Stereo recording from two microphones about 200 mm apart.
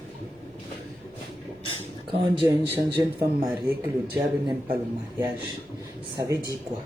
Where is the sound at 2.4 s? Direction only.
15° right (ahead or behind).